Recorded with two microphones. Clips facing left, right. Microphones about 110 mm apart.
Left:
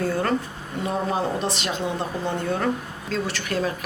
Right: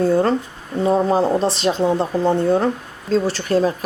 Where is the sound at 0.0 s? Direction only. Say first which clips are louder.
Right 7 dB; 25° right (ahead or behind).